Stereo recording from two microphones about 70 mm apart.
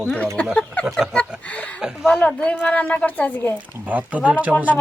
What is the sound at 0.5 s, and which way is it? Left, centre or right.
A woman's voice, centre.